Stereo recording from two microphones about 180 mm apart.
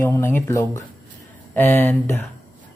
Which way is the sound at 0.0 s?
15° left (ahead or behind).